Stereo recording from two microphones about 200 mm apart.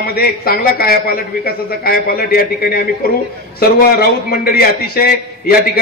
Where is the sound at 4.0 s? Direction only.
50° left (ahead or behind).